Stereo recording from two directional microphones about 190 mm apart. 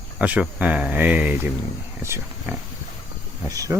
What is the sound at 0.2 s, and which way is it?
Speech, 5° right (ahead or behind).